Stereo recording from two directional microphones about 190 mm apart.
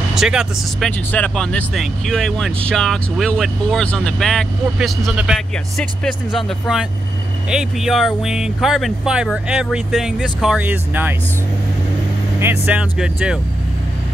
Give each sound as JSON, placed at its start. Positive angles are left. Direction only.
{"t": 0.1, "sound": "speech", "side_deg": -5}
{"t": 12.4, "sound": "speech", "side_deg": -10}